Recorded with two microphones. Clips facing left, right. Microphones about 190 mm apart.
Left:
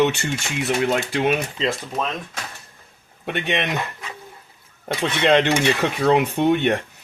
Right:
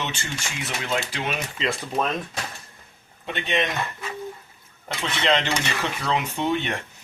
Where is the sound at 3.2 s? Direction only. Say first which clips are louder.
Left 3 dB; 65° left (ahead or behind).